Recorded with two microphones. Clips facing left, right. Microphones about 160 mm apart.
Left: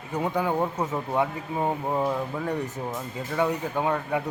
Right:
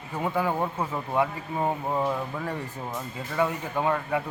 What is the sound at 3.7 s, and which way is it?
Speech, 10° left (ahead or behind).